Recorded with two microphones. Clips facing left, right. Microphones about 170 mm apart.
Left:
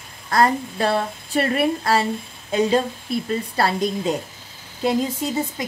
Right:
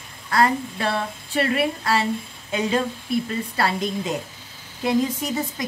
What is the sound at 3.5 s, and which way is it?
Speech, 35° left (ahead or behind).